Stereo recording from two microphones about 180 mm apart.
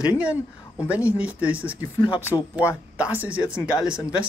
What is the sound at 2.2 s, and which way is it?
Speech, 15° left (ahead or behind).